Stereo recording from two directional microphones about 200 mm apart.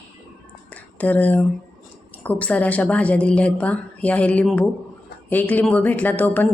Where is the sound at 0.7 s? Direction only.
10° left (ahead or behind).